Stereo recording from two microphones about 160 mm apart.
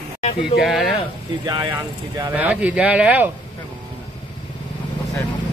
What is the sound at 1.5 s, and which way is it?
Speech, 25° right (ahead or behind).